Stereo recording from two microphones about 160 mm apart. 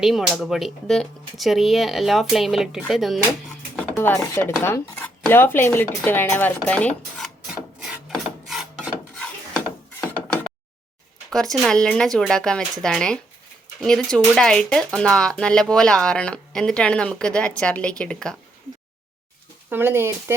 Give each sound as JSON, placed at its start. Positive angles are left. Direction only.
{"t": 0.0, "sound": "speech", "side_deg": 0}
{"t": 3.9, "sound": "speech", "side_deg": 15}
{"t": 7.5, "sound": "rub", "side_deg": -5}
{"t": 11.3, "sound": "speech", "side_deg": 5}
{"t": 19.7, "sound": "speech", "side_deg": -15}